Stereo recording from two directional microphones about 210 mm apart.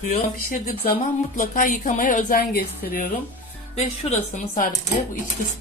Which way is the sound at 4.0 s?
30° left (ahead or behind).